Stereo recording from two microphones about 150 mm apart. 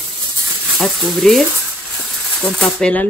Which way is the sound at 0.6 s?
Centre (ahead or behind).